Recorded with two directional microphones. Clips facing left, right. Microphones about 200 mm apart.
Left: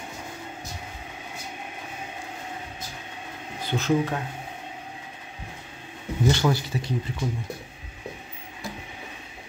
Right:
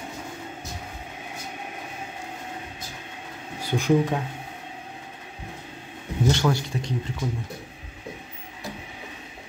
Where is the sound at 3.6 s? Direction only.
15° right (ahead or behind).